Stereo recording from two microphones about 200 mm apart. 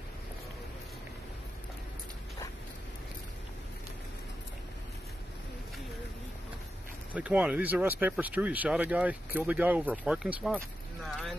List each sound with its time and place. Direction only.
7.2 s speech: 5° right (ahead or behind)